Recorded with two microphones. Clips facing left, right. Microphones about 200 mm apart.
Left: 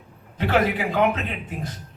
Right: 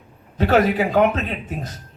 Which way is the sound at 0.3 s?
40° right (ahead or behind).